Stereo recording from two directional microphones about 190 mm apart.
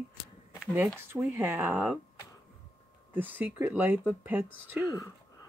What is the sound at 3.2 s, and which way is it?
Speech, 10° right (ahead or behind).